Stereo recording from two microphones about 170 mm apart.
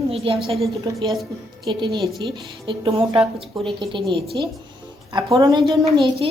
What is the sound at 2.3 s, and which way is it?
Speech, 30° right (ahead or behind).